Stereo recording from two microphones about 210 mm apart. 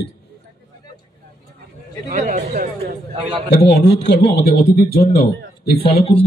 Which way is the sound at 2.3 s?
35° right (ahead or behind).